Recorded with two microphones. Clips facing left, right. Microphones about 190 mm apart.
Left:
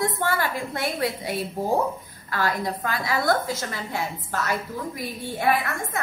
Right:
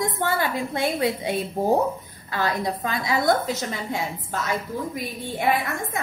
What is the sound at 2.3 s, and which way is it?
A woman's voice, 20° right (ahead or behind).